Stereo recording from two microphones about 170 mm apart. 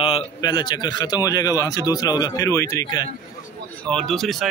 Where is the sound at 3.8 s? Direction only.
5° left (ahead or behind).